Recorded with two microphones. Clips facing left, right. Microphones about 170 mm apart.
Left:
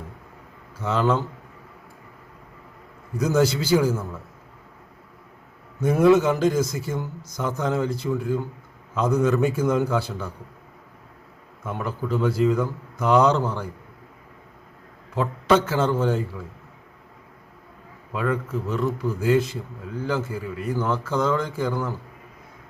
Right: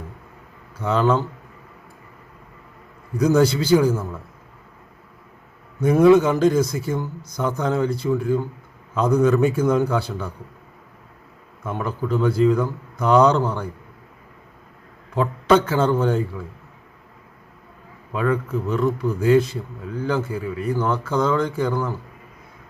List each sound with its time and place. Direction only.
0.8 s a man's voice: 5° left (ahead or behind)
3.2 s a man's voice: 5° left (ahead or behind)
5.8 s speech: 5° left (ahead or behind)
6.8 s speech: 60° right (ahead or behind)
7.4 s a man's voice: 5° left (ahead or behind)
9.0 s a man's voice: 5° left (ahead or behind)
11.6 s a man's voice: 5° left (ahead or behind)
15.2 s a man's voice: 5° left (ahead or behind)
18.1 s a man's voice: 5° left (ahead or behind)